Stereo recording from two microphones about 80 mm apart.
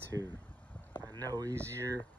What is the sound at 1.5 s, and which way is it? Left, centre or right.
Speech, right.